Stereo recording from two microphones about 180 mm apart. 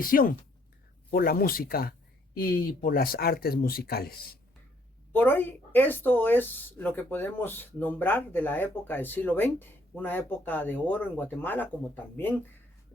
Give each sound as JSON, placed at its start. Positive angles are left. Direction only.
{"t": 0.0, "sound": "speech", "side_deg": 50}
{"t": 5.1, "sound": "speech", "side_deg": 10}